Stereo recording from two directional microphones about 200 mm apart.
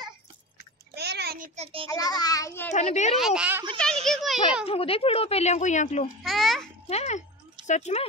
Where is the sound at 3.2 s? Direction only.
5° right (ahead or behind).